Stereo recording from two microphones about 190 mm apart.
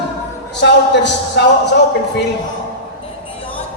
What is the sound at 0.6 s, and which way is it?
A man's voice, 70° left (ahead or behind).